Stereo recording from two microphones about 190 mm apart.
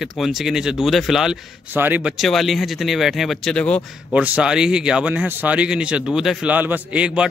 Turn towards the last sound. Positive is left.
turn(degrees=-5)  # may be behind; listen again after turning